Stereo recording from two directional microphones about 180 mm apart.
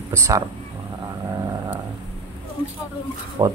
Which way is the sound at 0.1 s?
15° right (ahead or behind).